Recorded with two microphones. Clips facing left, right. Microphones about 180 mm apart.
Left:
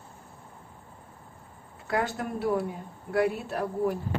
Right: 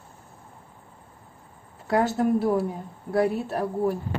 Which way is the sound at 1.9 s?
30° right (ahead or behind).